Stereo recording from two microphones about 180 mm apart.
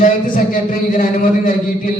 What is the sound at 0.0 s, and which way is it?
A man's voice, 45° left (ahead or behind).